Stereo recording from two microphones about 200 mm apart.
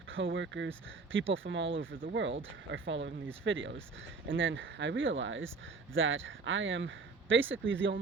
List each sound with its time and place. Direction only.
0.3 s speech: 70° right (ahead or behind)